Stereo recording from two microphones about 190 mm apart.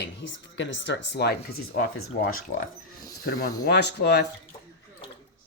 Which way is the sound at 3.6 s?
60° left (ahead or behind).